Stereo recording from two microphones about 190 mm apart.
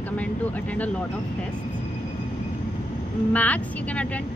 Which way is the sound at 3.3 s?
10° left (ahead or behind).